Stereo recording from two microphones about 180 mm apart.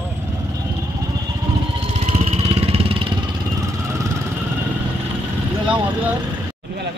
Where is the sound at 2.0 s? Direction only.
35° right (ahead or behind).